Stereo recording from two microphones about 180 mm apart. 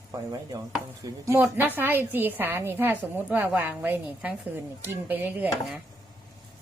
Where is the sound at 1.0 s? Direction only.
15° right (ahead or behind).